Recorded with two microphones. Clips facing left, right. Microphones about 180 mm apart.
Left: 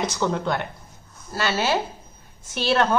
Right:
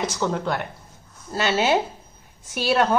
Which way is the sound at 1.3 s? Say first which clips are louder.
Right 3 dB; 20° right (ahead or behind).